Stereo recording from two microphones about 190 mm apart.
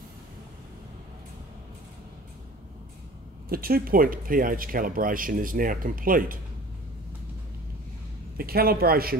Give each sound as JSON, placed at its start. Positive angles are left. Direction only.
{"t": 3.4, "sound": "speech", "side_deg": -50}
{"t": 8.4, "sound": "speech", "side_deg": -50}